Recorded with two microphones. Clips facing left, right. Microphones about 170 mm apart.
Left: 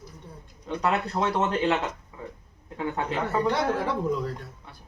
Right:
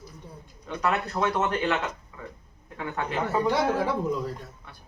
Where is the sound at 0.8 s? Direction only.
30° left (ahead or behind).